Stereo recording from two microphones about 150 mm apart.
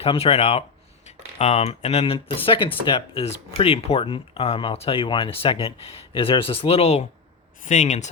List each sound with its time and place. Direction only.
0.0 s speech: 40° left (ahead or behind)
7.6 s speech: 55° left (ahead or behind)